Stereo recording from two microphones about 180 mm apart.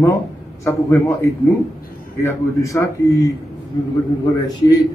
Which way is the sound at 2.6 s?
15° left (ahead or behind).